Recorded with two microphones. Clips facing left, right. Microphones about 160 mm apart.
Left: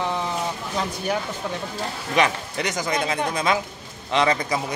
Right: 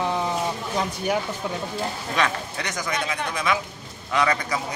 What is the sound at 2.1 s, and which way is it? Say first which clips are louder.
A man's voice: left 5 dB; 20° left (ahead or behind).